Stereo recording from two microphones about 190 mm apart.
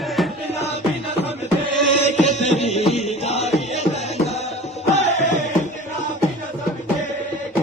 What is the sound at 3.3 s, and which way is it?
Music, 35° left (ahead or behind).